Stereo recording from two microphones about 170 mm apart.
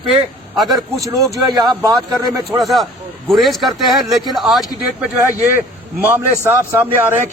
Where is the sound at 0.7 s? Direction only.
20° right (ahead or behind).